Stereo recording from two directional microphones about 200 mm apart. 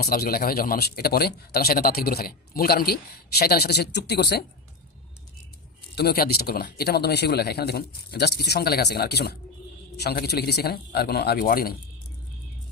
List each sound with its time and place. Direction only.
0.0 s a man's voice: 50° left (ahead or behind)
6.0 s a man's voice: 50° left (ahead or behind)